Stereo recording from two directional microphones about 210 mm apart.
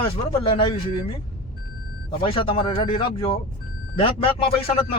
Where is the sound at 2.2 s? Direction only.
25° left (ahead or behind).